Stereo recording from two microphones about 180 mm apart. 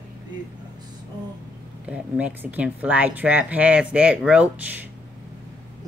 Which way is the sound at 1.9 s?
10° right (ahead or behind).